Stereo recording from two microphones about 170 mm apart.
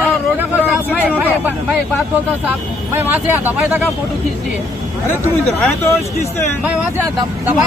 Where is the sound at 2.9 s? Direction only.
10° right (ahead or behind).